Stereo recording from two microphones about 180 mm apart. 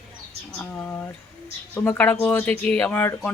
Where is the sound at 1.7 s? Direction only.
10° left (ahead or behind).